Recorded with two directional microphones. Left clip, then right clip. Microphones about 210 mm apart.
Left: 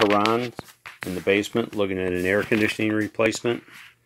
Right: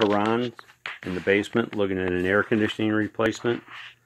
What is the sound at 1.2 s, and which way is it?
Speech, centre (ahead or behind).